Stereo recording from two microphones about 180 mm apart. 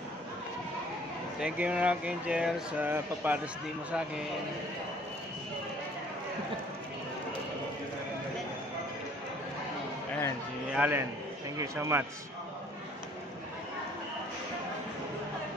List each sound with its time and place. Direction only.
1.4 s speech: 5° right (ahead or behind)
10.7 s a man's voice: 10° right (ahead or behind)